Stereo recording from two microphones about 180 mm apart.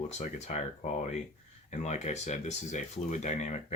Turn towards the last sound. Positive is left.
turn(degrees=40)  # may be behind; listen again after turning